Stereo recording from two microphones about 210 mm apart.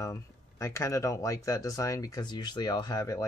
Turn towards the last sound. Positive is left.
turn(degrees=15)  # may be behind; listen again after turning